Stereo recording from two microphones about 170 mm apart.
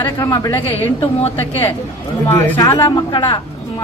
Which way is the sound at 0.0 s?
20° left (ahead or behind).